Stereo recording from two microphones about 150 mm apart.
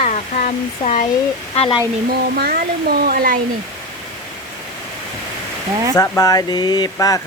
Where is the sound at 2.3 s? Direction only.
90° right; by 3.4 s 70° right (ahead or behind).